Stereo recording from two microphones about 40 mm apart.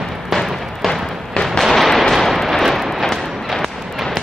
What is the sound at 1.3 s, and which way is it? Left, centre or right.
Fireworks, left.